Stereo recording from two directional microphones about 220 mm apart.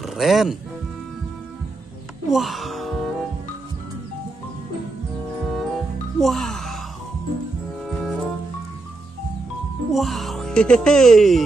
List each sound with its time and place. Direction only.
0.0 s speech: centre (ahead or behind)
2.2 s music: centre (ahead or behind)
5.4 s music: centre (ahead or behind)
7.8 s music: centre (ahead or behind)
9.9 s speech: centre (ahead or behind)